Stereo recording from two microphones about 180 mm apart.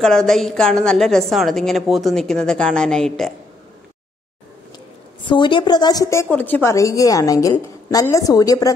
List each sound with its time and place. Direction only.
0.0 s a woman's voice: 5° left (ahead or behind)
5.3 s a woman's voice: 25° left (ahead or behind)